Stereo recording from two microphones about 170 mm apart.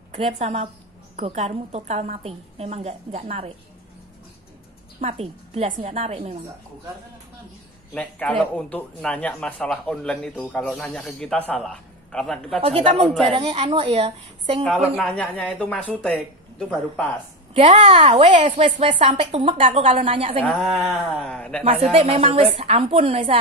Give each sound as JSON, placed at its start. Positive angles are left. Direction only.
{"t": 0.1, "sound": "a woman's voice", "side_deg": -35}
{"t": 5.0, "sound": "a woman's voice", "side_deg": -35}
{"t": 7.9, "sound": "speech", "side_deg": 10}
{"t": 12.6, "sound": "a woman's voice", "side_deg": -35}
{"t": 15.0, "sound": "speech", "side_deg": 5}
{"t": 17.6, "sound": "a woman's voice", "side_deg": -30}
{"t": 20.4, "sound": "speech", "side_deg": 5}
{"t": 21.9, "sound": "a woman's voice", "side_deg": -35}